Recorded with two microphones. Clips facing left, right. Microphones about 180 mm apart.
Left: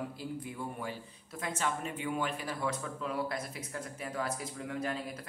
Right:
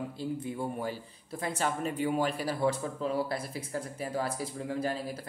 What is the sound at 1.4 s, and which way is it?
Speech, 35° right (ahead or behind).